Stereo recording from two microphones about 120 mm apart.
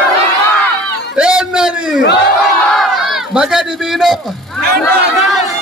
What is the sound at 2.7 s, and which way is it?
Crowd, centre (ahead or behind).